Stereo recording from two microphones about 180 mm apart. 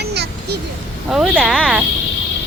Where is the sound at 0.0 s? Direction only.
65° right (ahead or behind).